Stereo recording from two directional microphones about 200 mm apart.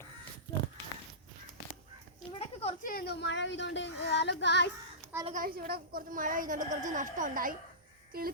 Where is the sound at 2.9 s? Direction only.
55° left (ahead or behind).